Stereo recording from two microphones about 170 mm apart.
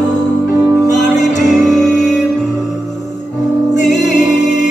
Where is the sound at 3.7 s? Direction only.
45° left (ahead or behind).